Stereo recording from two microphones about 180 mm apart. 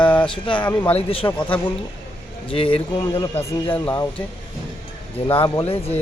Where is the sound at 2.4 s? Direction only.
30° left (ahead or behind).